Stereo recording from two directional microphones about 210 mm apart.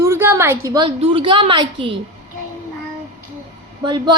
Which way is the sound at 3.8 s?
20° right (ahead or behind).